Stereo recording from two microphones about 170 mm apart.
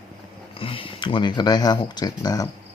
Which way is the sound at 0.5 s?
30° left (ahead or behind).